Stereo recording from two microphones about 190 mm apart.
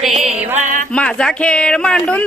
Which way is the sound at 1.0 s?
5° left (ahead or behind).